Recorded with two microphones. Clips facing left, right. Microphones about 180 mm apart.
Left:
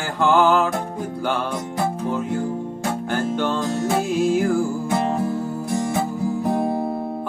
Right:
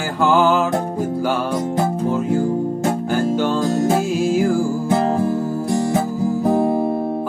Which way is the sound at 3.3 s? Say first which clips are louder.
Right 4 dB; 5° right (ahead or behind).